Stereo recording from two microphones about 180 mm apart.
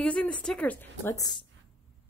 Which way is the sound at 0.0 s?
5° left (ahead or behind).